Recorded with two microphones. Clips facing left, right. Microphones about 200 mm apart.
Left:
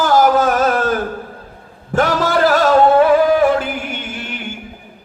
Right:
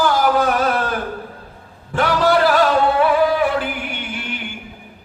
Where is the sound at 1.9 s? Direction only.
45° left (ahead or behind).